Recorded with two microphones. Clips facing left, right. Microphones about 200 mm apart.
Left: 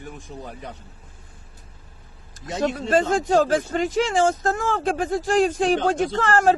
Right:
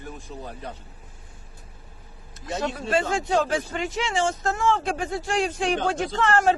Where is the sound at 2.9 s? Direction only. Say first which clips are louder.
Left 4 dB; 40° left (ahead or behind).